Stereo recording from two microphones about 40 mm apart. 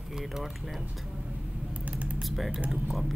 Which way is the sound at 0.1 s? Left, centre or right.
Centre.